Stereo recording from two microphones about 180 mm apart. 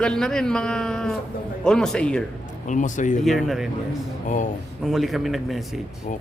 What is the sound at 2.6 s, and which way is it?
Speech, 45° left (ahead or behind).